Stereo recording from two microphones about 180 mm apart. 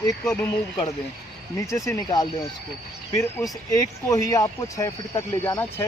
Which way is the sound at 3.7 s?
20° left (ahead or behind).